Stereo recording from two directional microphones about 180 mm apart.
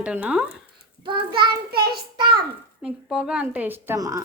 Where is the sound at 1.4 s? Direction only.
60° right (ahead or behind).